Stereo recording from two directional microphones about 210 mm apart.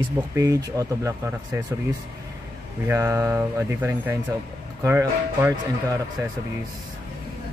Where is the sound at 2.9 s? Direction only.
10° right (ahead or behind).